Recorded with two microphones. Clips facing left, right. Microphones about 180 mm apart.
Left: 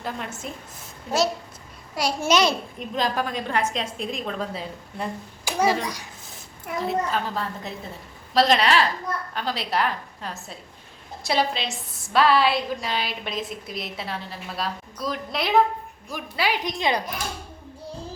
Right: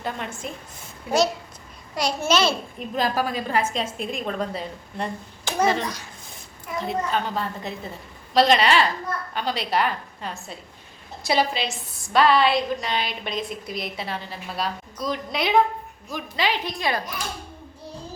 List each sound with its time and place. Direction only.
0.0 s a woman's voice: 5° left (ahead or behind)
2.0 s a woman's voice: 10° left (ahead or behind)
2.7 s a woman's voice: 5° right (ahead or behind)
16.7 s a child's voice: 20° left (ahead or behind)